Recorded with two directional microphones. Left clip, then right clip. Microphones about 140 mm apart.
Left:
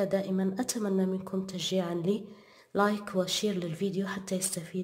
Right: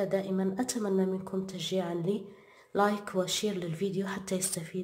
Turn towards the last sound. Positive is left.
turn(degrees=5)  # may be behind; listen again after turning